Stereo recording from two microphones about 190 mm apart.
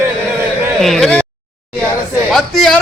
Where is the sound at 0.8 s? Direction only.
Centre (ahead or behind).